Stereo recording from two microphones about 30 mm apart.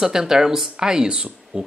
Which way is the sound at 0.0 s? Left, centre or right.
Centre.